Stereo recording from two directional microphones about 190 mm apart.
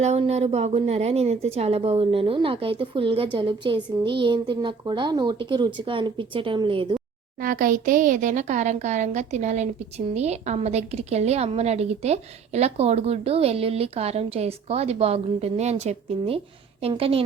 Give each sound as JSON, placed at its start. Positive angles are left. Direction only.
{"t": 0.0, "sound": "a woman's voice", "side_deg": -35}
{"t": 7.3, "sound": "a woman's voice", "side_deg": -45}